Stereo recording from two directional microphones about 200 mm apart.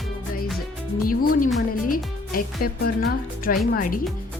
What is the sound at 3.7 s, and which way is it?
Speech, 45° left (ahead or behind).